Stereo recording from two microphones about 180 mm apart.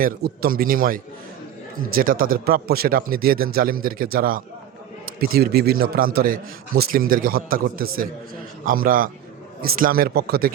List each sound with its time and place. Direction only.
0.0 s a man's voice: 55° right (ahead or behind)